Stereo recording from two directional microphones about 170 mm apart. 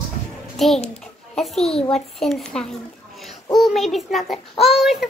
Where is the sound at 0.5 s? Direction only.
Centre (ahead or behind).